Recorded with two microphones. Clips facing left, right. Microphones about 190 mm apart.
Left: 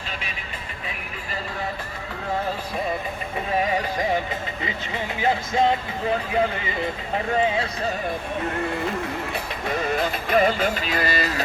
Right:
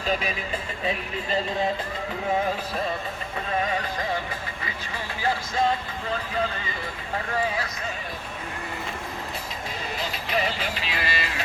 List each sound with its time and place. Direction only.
0.1 s speech: 40° right (ahead or behind)
3.6 s music: 15° left (ahead or behind)
5.2 s speech: 20° left (ahead or behind)
9.3 s music: 60° left (ahead or behind); by 11.4 s 40° left (ahead or behind)